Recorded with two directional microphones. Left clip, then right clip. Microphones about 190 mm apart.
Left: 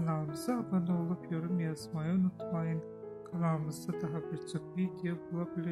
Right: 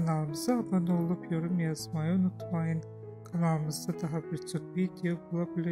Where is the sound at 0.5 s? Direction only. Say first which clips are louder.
Right 5 dB; 25° right (ahead or behind).